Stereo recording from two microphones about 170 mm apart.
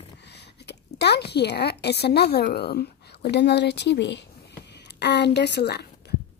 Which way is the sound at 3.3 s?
90° left.